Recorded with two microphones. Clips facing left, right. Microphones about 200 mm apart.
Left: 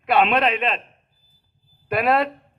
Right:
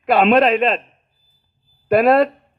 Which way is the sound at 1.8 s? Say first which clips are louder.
Right 7 dB; 45° right (ahead or behind).